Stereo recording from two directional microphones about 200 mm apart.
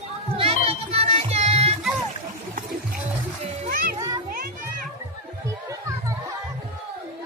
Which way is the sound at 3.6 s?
45° right (ahead or behind).